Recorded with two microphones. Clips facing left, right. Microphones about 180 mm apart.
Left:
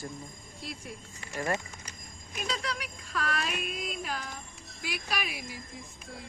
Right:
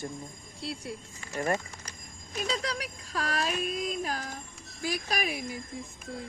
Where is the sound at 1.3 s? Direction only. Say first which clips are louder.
Right 2 dB; 20° right (ahead or behind).